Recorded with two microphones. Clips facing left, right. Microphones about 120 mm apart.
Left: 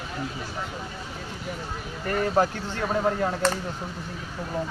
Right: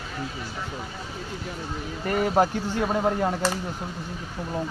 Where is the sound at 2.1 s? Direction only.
15° right (ahead or behind).